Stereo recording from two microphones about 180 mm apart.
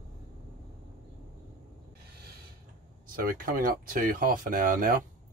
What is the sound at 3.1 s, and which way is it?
Speech, 55° right (ahead or behind).